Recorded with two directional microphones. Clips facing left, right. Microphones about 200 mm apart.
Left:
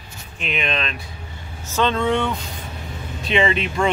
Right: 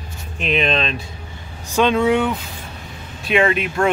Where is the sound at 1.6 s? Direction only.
15° right (ahead or behind).